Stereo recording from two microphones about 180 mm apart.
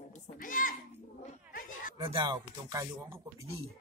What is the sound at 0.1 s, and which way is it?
Speech, 45° left (ahead or behind).